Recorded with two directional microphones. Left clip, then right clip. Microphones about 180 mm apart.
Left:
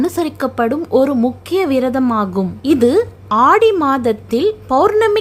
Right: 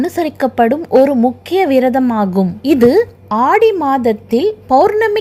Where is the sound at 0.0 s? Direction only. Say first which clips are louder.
Right 2 dB; 5° right (ahead or behind).